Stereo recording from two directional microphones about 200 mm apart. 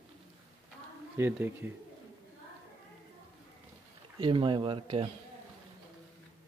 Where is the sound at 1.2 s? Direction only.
10° right (ahead or behind).